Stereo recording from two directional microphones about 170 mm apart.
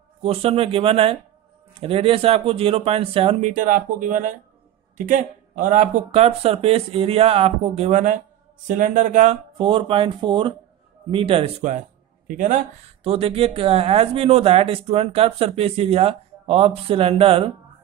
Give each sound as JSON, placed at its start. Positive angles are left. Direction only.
{"t": 0.2, "sound": "a man's voice", "side_deg": -35}
{"t": 9.6, "sound": "speech", "side_deg": -30}
{"t": 12.3, "sound": "a man's voice", "side_deg": -50}
{"t": 13.0, "sound": "speech", "side_deg": -35}